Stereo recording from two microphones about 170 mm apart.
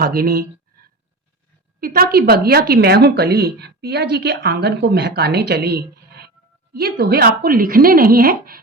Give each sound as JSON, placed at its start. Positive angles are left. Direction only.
{"t": 0.0, "sound": "a woman's voice", "side_deg": -60}